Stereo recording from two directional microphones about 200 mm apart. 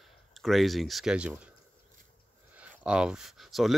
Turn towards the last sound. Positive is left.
turn(degrees=0)  # may be behind; listen again after turning